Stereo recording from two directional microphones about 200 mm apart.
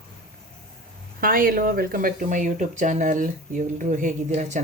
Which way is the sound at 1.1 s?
45° right (ahead or behind).